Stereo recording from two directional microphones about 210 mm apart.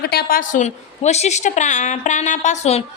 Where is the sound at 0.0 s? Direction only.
50° left (ahead or behind).